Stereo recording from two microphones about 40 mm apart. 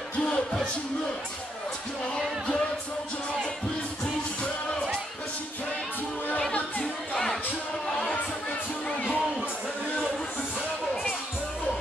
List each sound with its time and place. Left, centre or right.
0.2 s music: left
8.8 s music: left